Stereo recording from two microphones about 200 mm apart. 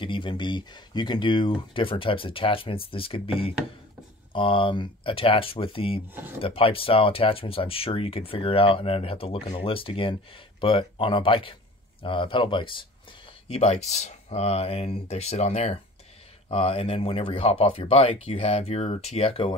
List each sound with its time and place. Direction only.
0.0 s speech: 25° left (ahead or behind)